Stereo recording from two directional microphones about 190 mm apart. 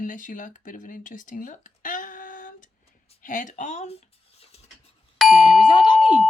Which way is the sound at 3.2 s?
45° left (ahead or behind).